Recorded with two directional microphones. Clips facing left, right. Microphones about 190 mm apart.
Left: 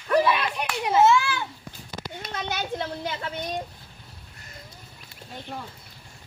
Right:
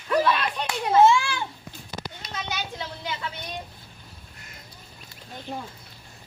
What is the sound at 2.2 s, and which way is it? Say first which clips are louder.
A child's voice: left 4 dB; 55° left (ahead or behind).